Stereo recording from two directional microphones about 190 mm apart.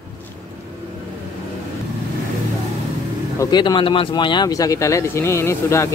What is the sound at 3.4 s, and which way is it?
Speech, 20° left (ahead or behind).